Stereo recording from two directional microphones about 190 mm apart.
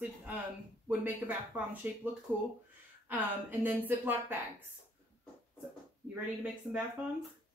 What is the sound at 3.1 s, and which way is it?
A woman's voice, 10° right (ahead or behind).